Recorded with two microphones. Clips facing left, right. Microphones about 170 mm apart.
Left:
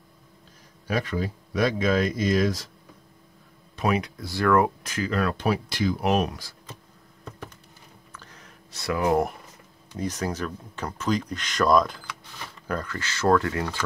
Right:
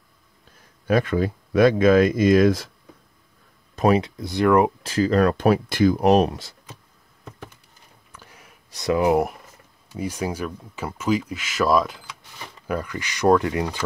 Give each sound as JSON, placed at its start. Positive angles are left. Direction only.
{"t": 0.8, "sound": "speech", "side_deg": -55}
{"t": 3.7, "sound": "a sound", "side_deg": -35}
{"t": 4.0, "sound": "speech", "side_deg": -20}
{"t": 4.8, "sound": "speech", "side_deg": -35}
{"t": 8.1, "sound": "a sound", "side_deg": -10}
{"t": 9.9, "sound": "speech", "side_deg": -10}